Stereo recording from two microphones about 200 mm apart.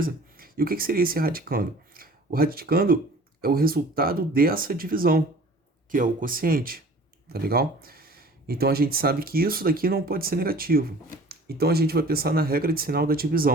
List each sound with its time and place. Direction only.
0.0 s speech: 45° right (ahead or behind)